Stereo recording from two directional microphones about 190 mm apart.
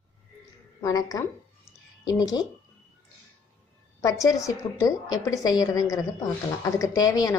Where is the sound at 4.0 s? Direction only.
20° left (ahead or behind).